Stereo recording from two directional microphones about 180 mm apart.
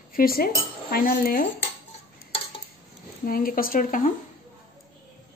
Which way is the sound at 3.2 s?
55° left (ahead or behind).